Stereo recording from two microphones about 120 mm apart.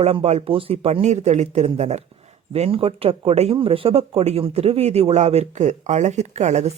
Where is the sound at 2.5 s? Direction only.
55° right (ahead or behind).